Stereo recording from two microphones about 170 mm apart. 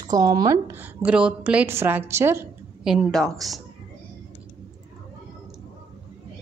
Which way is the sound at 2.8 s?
5° right (ahead or behind).